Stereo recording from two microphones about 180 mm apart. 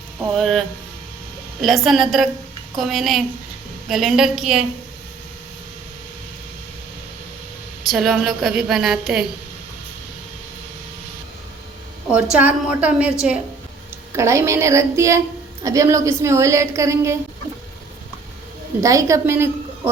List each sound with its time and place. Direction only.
0.3 s a woman's voice: centre (ahead or behind)
1.6 s a woman's voice: centre (ahead or behind)
7.9 s a woman's voice: centre (ahead or behind)
12.1 s a woman's voice: 10° right (ahead or behind)
18.8 s a woman's voice: 20° right (ahead or behind)